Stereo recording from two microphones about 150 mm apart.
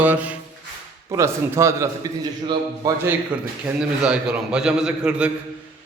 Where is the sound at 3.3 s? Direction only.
10° right (ahead or behind).